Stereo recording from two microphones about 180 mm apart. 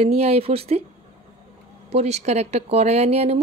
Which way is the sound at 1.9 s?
35° right (ahead or behind).